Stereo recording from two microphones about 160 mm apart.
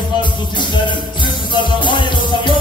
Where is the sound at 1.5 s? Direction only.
30° left (ahead or behind).